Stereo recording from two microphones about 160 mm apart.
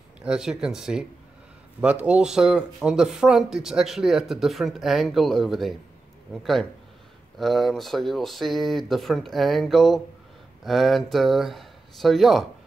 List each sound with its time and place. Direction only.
0.2 s speech: 5° right (ahead or behind)